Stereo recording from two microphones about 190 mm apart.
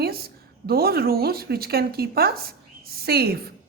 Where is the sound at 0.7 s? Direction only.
55° right (ahead or behind).